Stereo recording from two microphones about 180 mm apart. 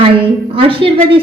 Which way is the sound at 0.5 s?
30° right (ahead or behind).